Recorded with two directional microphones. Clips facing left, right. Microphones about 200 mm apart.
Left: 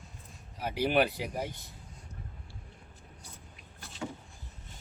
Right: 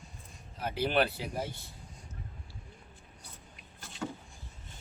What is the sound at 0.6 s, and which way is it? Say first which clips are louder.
Speech: left 2 dB; 10° left (ahead or behind).